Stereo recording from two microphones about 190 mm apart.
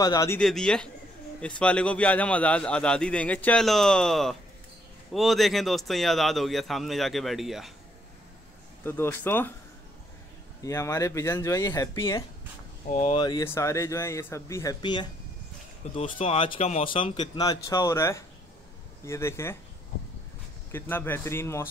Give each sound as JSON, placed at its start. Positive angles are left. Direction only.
{"t": 0.0, "sound": "speech", "side_deg": 15}
{"t": 0.4, "sound": "a man's voice", "side_deg": 5}
{"t": 8.8, "sound": "speech", "side_deg": 10}
{"t": 10.6, "sound": "speech", "side_deg": 15}
{"t": 12.9, "sound": "speech", "side_deg": 35}
{"t": 13.2, "sound": "speech", "side_deg": 25}
{"t": 20.7, "sound": "speech", "side_deg": 10}